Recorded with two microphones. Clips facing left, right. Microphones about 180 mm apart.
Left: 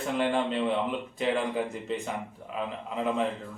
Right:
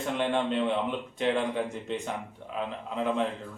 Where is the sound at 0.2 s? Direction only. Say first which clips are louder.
Even; centre (ahead or behind).